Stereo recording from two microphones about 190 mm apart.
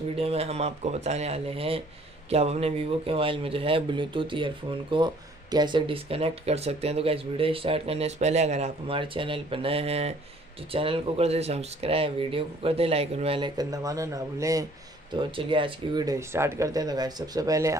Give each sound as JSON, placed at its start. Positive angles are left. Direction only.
{"t": 0.1, "sound": "speech", "side_deg": -30}
{"t": 15.1, "sound": "speech", "side_deg": -25}